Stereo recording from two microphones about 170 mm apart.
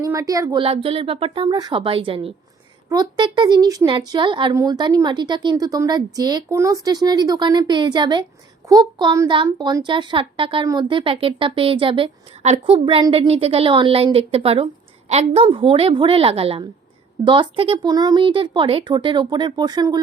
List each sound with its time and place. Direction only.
0.1 s a woman's voice: 20° right (ahead or behind)
0.6 s a woman's voice: 35° right (ahead or behind)